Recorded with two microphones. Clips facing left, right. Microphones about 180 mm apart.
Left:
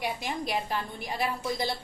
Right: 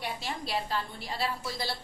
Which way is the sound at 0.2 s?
15° left (ahead or behind).